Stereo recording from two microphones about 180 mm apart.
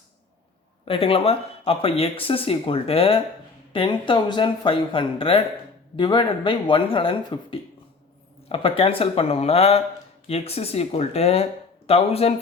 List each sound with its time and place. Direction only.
0.9 s speech: 30° left (ahead or behind)